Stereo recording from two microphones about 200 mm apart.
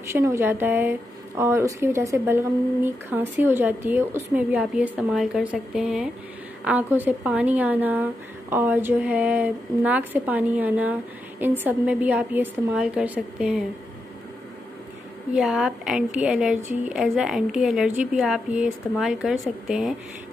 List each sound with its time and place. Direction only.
0.1 s a woman's voice: 15° right (ahead or behind)
15.3 s speech: centre (ahead or behind)